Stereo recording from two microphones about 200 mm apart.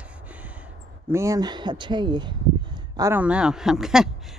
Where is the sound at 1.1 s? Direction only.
15° right (ahead or behind).